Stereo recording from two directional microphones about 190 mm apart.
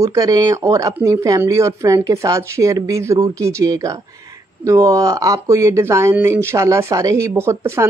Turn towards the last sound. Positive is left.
turn(degrees=-15)  # may be behind; listen again after turning